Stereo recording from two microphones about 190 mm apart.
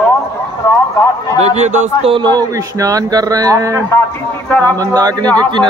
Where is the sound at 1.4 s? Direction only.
35° right (ahead or behind).